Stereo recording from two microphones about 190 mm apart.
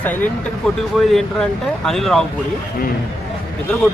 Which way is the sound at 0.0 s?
10° left (ahead or behind).